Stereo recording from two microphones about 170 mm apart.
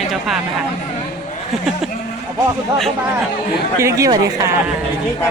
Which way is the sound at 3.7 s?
20° right (ahead or behind).